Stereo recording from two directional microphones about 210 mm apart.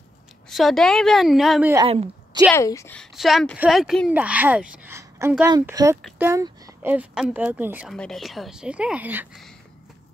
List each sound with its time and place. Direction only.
0.5 s a woman's voice: centre (ahead or behind)
1.9 s a woman's voice: 25° right (ahead or behind)
2.5 s a woman's voice: 15° left (ahead or behind); by 9.5 s 5° right (ahead or behind)